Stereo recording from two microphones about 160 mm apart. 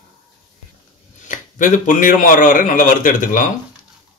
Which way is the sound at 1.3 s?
55° left (ahead or behind).